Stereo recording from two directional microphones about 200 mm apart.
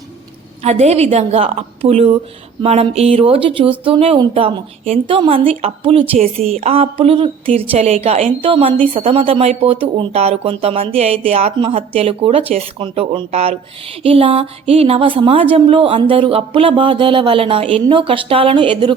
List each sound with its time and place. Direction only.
0.6 s a woman's voice: 30° right (ahead or behind)